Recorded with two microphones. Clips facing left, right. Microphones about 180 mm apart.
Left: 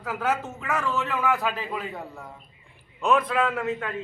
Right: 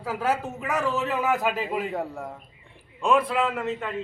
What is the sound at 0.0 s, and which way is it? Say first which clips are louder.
Speech: right 1 dB; 10° right (ahead or behind).